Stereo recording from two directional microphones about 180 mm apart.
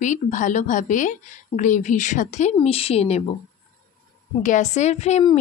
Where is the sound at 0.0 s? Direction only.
45° left (ahead or behind).